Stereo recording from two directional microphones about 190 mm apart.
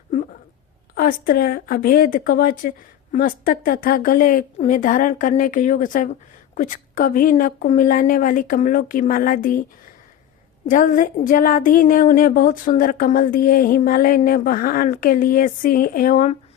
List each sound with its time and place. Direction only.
0.9 s speech: 50° left (ahead or behind)
10.7 s speech: 45° left (ahead or behind)